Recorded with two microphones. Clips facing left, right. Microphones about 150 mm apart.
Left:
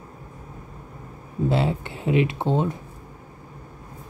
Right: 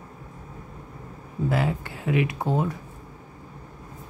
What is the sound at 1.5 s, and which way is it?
Speech, 25° left (ahead or behind).